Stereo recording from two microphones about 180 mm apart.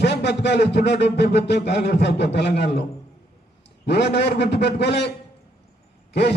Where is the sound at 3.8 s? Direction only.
70° left (ahead or behind).